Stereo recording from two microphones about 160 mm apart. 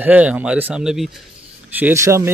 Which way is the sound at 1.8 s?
15° right (ahead or behind).